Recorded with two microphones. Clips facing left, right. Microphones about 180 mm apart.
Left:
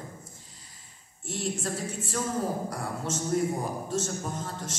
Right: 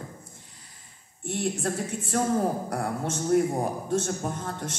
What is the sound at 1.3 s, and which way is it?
A man's voice, 60° right (ahead or behind).